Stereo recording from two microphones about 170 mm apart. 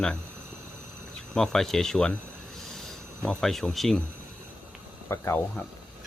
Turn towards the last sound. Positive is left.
turn(degrees=15)  # may be behind; listen again after turning